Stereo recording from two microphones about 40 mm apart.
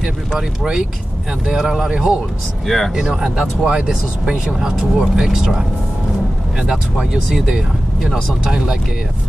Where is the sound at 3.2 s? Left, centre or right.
Centre.